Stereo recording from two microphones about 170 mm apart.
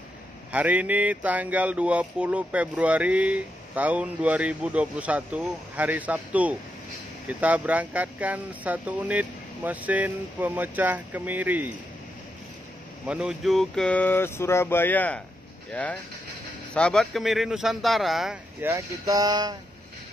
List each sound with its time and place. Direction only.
0.5 s speech: 10° right (ahead or behind)
13.0 s speech: 5° right (ahead or behind)
18.6 s speech: 15° right (ahead or behind)